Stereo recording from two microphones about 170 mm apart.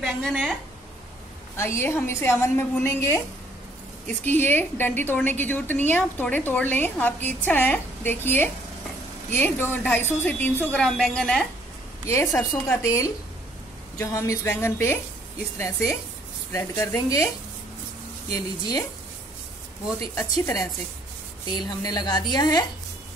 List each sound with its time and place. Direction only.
0.0 s a woman's voice: centre (ahead or behind)
1.6 s a woman's voice: 15° left (ahead or behind)
12.1 s a woman's voice: 20° left (ahead or behind)
18.3 s a woman's voice: 20° left (ahead or behind)
20.2 s a woman's voice: 15° left (ahead or behind)